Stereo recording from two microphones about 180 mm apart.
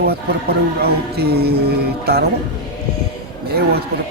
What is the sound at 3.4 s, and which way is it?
Speech, 60° right (ahead or behind).